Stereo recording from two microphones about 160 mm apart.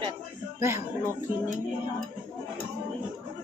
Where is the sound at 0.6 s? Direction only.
20° right (ahead or behind).